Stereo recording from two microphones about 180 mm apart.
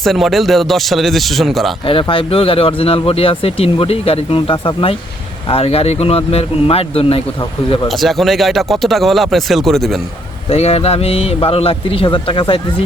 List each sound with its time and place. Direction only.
0.0 s speech: centre (ahead or behind)
1.9 s speech: 30° left (ahead or behind)
7.9 s speech: centre (ahead or behind)
10.5 s speech: 35° left (ahead or behind)